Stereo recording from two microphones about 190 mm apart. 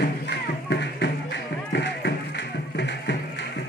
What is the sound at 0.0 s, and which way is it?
Music, 60° left (ahead or behind).